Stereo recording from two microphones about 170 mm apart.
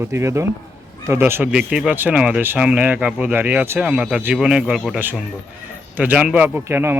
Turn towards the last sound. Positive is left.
turn(degrees=-15)  # may be behind; listen again after turning